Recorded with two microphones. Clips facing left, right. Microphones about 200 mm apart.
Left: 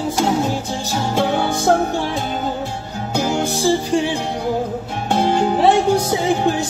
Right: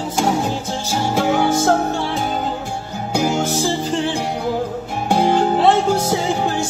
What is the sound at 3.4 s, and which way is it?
Music, 15° left (ahead or behind).